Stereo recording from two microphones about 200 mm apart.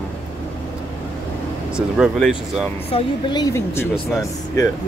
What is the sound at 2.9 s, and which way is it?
Speech, 20° left (ahead or behind).